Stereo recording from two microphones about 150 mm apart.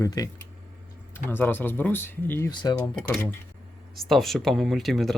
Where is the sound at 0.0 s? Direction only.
20° left (ahead or behind).